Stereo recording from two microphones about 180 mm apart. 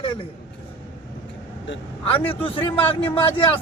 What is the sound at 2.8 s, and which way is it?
Speech, 10° left (ahead or behind).